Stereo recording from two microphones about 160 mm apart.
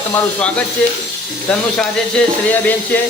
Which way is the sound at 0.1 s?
10° left (ahead or behind).